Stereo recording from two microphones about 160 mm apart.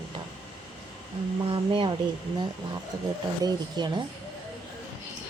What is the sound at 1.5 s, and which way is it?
Speech, 30° right (ahead or behind).